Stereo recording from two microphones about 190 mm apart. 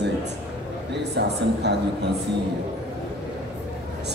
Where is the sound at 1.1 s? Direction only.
60° right (ahead or behind).